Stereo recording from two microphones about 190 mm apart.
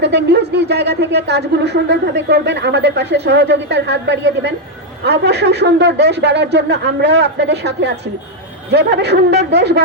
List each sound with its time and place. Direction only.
0.0 s speech: 65° right (ahead or behind)